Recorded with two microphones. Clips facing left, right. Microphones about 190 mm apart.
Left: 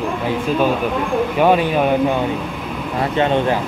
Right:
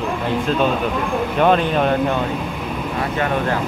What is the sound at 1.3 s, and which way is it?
Speech, 10° left (ahead or behind).